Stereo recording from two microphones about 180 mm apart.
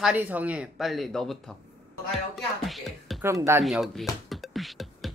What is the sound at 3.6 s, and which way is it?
Music, centre (ahead or behind).